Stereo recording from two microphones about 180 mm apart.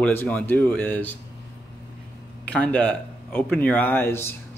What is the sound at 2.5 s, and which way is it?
Speech, 10° left (ahead or behind).